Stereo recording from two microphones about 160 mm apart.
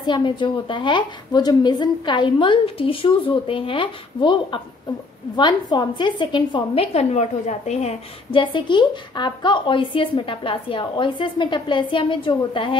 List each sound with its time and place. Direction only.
0.0 s a woman's voice: 30° left (ahead or behind)